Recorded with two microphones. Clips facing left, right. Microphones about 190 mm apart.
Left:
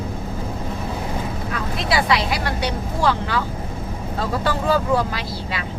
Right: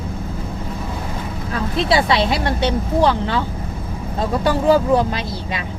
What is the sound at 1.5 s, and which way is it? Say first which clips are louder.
Speech: right 5 dB; 25° right (ahead or behind).